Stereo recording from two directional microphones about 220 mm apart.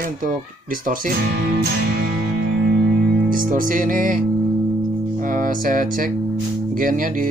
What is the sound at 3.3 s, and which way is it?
Speech, 40° right (ahead or behind).